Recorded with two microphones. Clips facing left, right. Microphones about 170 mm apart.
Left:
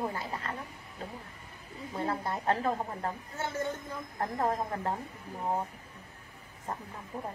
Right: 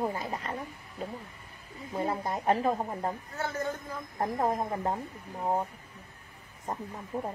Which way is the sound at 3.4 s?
25° left (ahead or behind).